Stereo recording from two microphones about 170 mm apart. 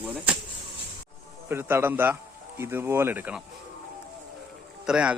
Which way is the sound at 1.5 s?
15° right (ahead or behind).